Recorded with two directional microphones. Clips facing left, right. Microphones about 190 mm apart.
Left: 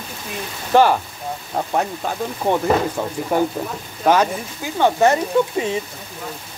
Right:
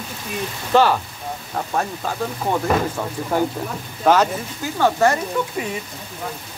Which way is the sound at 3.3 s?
15° left (ahead or behind).